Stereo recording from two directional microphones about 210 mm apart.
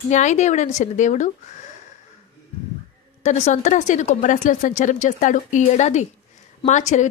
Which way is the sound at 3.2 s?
35° left (ahead or behind).